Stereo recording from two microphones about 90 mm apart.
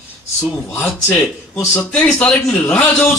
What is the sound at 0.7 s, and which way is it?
Speech, 25° left (ahead or behind).